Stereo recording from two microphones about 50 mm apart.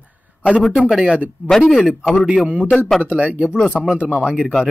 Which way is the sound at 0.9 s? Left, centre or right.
Centre.